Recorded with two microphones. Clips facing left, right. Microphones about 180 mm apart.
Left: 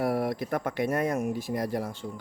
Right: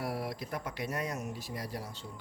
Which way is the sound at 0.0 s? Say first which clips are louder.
Left 9 dB; 55° left (ahead or behind).